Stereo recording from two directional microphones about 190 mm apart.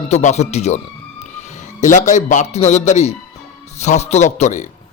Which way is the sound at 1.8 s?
40° left (ahead or behind).